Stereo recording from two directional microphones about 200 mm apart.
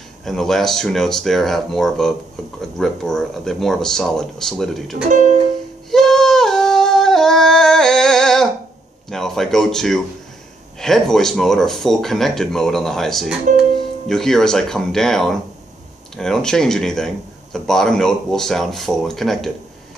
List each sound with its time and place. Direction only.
0.2 s speech: centre (ahead or behind)
5.1 s music: 40° right (ahead or behind)
5.9 s a sound: centre (ahead or behind)
9.1 s speech: centre (ahead or behind)